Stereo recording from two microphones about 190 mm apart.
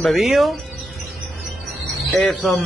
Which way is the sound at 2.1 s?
5° left (ahead or behind).